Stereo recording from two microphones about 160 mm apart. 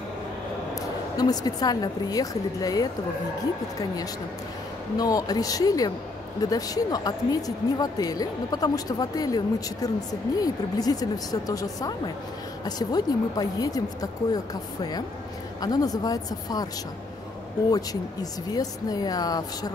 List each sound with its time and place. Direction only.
1.1 s speech: 25° left (ahead or behind)
4.9 s speech: 25° left (ahead or behind)
17.6 s speech: 25° left (ahead or behind)